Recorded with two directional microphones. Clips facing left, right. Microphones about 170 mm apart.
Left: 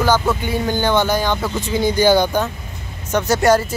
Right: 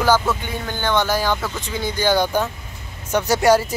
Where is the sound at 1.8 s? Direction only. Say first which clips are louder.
Left 6 dB; 10° left (ahead or behind).